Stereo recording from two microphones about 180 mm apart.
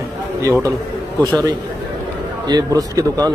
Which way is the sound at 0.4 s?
20° right (ahead or behind).